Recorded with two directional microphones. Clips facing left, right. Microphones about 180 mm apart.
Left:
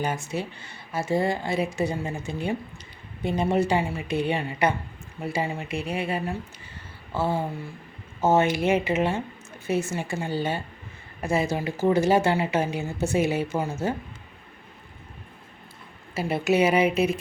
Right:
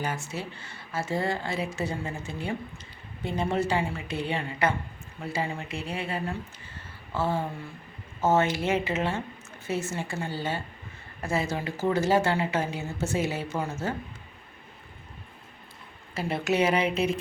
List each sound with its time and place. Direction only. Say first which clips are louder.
0.0 s speech: left 4 dB; 15° left (ahead or behind)
16.1 s speech: left 4 dB; 5° left (ahead or behind)